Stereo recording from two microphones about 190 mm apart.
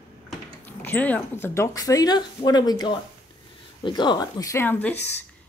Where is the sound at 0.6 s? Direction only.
10° left (ahead or behind).